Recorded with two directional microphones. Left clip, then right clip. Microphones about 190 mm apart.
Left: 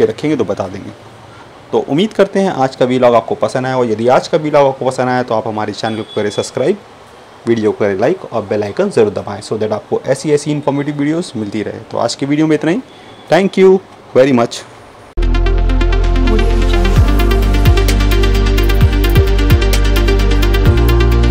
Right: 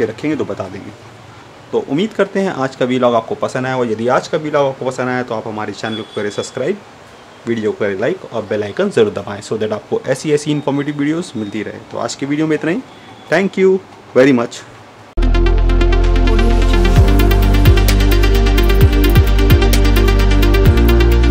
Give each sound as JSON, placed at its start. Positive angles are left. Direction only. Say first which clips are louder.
{"t": 0.0, "sound": "speech", "louder": "left 5 dB", "side_deg": 15}
{"t": 1.7, "sound": "speech", "louder": "left 3 dB", "side_deg": 15}
{"t": 15.1, "sound": "music", "louder": "right 1 dB", "side_deg": 0}